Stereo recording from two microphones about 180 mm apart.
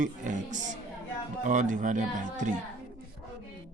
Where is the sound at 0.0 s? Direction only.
45° right (ahead or behind).